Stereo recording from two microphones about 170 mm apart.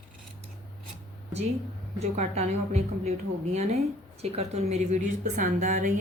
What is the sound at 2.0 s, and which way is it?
A woman's voice, 40° right (ahead or behind).